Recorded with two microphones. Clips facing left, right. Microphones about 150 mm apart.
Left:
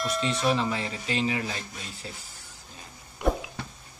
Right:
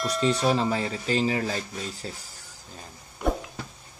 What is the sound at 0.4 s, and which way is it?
Speech, 35° right (ahead or behind).